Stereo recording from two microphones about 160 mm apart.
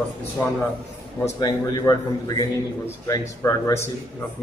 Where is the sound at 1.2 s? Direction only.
25° left (ahead or behind).